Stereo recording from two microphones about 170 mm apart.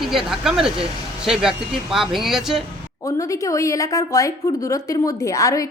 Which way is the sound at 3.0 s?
20° left (ahead or behind).